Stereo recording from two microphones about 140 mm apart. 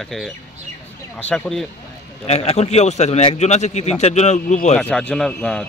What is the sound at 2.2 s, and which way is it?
A man's voice, 50° left (ahead or behind).